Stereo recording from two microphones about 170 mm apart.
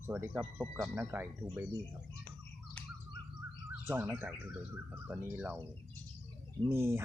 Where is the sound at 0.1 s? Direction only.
10° right (ahead or behind).